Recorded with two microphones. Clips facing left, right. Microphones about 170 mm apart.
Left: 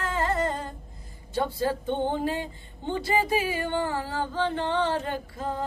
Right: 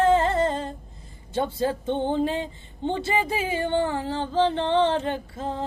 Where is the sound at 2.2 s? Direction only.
20° right (ahead or behind).